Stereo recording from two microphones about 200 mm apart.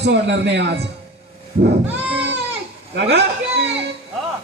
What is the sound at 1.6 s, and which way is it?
Goat, 60° right (ahead or behind).